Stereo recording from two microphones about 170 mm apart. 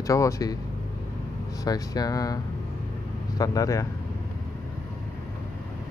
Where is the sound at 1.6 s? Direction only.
20° left (ahead or behind).